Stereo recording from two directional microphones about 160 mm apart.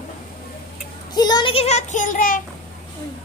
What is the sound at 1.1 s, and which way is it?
A child's voice, 25° left (ahead or behind).